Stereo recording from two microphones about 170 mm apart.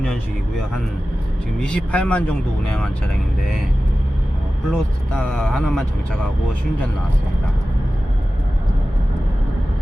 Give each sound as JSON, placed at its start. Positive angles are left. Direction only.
{"t": 1.5, "sound": "speech", "side_deg": 5}
{"t": 4.7, "sound": "speech", "side_deg": 5}